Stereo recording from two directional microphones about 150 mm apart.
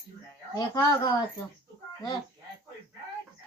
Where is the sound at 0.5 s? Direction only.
25° left (ahead or behind).